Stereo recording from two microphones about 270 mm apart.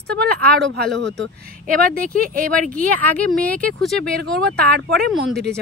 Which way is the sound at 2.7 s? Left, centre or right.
Centre.